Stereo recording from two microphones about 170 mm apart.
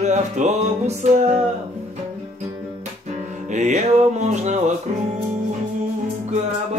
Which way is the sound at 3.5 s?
45° right (ahead or behind).